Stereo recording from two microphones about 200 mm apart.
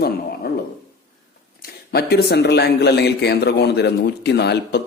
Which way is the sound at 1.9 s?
55° left (ahead or behind).